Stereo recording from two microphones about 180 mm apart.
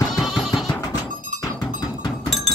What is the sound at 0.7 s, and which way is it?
Music, 20° left (ahead or behind).